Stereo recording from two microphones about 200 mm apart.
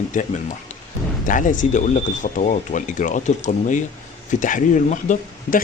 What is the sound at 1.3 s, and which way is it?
Speech, 40° left (ahead or behind).